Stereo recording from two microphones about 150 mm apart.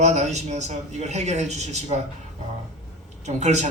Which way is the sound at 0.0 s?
50° right (ahead or behind).